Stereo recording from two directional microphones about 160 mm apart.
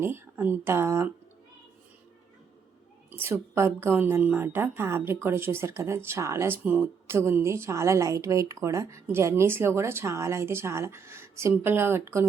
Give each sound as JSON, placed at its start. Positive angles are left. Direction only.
{"t": 0.0, "sound": "a woman's voice", "side_deg": -15}
{"t": 3.1, "sound": "a woman's voice", "side_deg": -15}